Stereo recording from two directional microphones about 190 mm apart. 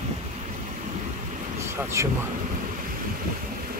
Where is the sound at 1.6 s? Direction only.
15° right (ahead or behind).